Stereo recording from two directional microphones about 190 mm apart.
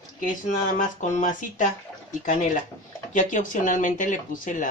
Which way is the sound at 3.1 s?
45° left (ahead or behind).